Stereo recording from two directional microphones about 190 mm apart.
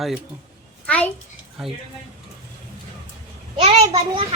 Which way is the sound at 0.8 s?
10° left (ahead or behind).